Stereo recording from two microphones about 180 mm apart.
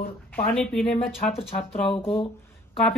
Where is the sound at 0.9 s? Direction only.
35° left (ahead or behind).